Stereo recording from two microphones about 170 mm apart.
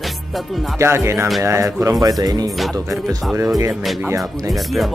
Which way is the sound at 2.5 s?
Centre (ahead or behind).